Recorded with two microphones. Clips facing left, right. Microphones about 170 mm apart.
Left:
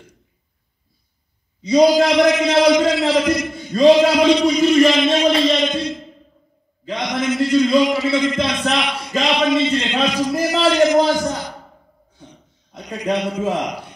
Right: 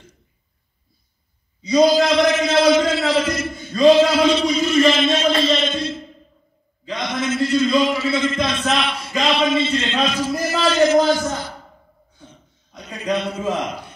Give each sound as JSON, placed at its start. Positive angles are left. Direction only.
{"t": 1.8, "sound": "a man's voice", "side_deg": 15}
{"t": 7.1, "sound": "speech", "side_deg": 15}
{"t": 12.8, "sound": "speech", "side_deg": 15}